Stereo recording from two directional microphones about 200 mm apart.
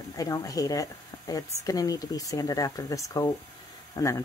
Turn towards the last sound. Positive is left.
turn(degrees=15)  # may be behind; listen again after turning